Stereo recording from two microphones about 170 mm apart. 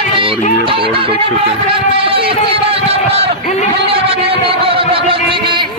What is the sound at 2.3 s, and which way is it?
A man's voice, 35° right (ahead or behind).